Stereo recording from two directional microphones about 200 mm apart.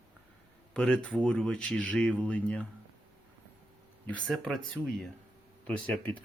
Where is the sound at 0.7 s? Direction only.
5° left (ahead or behind).